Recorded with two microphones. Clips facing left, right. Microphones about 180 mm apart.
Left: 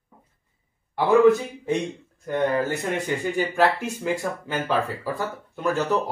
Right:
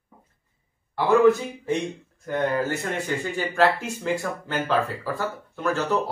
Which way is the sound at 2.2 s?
15° left (ahead or behind).